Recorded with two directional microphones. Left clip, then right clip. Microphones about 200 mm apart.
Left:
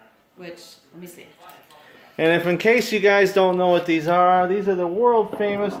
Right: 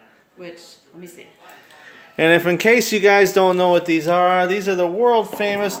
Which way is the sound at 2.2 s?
35° right (ahead or behind).